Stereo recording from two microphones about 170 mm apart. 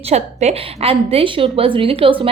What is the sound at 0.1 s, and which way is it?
Speech, 40° right (ahead or behind).